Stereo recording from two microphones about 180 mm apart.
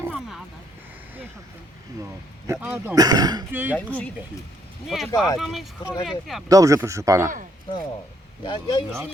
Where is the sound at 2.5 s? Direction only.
10° right (ahead or behind).